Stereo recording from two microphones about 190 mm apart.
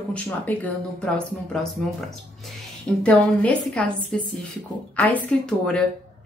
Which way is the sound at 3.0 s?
5° left (ahead or behind).